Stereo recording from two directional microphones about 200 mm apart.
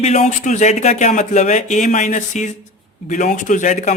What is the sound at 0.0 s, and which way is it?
Speech, 35° left (ahead or behind).